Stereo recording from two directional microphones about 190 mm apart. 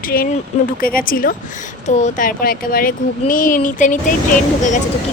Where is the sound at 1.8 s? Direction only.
40° left (ahead or behind).